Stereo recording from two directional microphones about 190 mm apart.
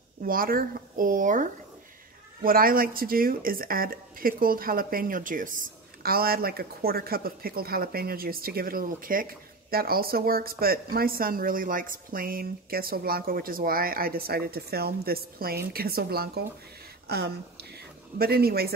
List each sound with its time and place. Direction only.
0.2 s speech: 50° right (ahead or behind)